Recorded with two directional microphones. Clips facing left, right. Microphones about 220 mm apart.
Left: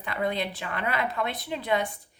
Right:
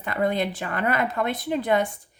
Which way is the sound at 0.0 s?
45° right (ahead or behind).